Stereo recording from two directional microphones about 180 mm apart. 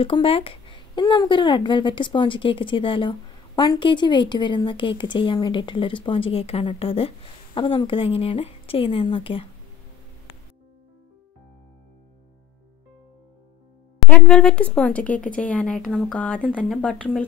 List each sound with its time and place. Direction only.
0.0 s speech: 30° left (ahead or behind)
13.9 s speech: 5° left (ahead or behind)